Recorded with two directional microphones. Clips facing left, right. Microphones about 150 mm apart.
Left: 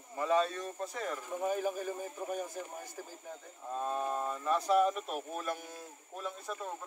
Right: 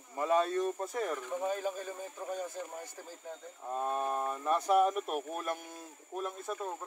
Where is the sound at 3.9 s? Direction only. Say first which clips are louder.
Right 1 dB; 15° right (ahead or behind).